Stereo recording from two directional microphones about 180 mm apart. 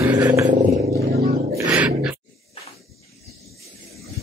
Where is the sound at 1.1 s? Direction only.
10° right (ahead or behind).